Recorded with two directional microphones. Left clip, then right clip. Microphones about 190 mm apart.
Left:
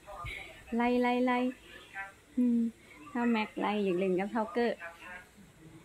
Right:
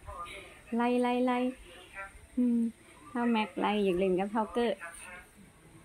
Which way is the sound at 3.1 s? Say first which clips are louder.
Right 1 dB; 5° right (ahead or behind).